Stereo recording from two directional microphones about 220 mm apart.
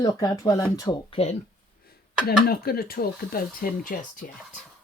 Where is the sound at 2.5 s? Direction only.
45° left (ahead or behind).